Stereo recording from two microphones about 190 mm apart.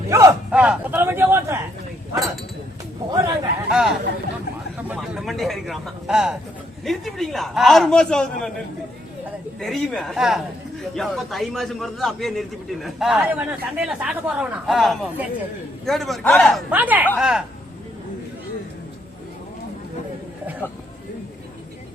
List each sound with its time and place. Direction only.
0.1 s speech: 15° right (ahead or behind)
2.1 s a man's voice: centre (ahead or behind)
3.1 s speech: 20° right (ahead or behind)
3.7 s a man's voice: 5° right (ahead or behind)
9.6 s a man's voice: centre (ahead or behind)